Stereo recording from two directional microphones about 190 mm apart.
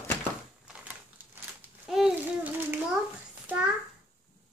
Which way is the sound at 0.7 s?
10° right (ahead or behind).